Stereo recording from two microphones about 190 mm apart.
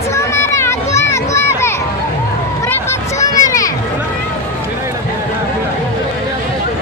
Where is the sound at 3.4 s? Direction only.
15° left (ahead or behind).